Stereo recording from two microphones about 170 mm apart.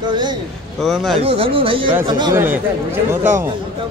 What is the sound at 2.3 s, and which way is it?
Speech, 10° right (ahead or behind).